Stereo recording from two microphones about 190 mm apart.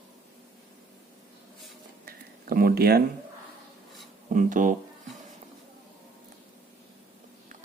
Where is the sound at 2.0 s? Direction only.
50° right (ahead or behind).